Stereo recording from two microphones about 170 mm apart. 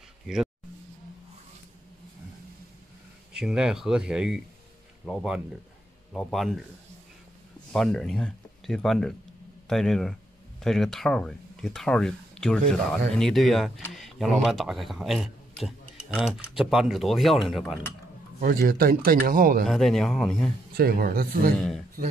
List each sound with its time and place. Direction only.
3.3 s speech: 5° right (ahead or behind)
7.7 s speech: 5° left (ahead or behind)
18.4 s speech: 55° right (ahead or behind)
19.7 s speech: centre (ahead or behind)
20.7 s speech: 65° right (ahead or behind)
21.5 s speech: centre (ahead or behind)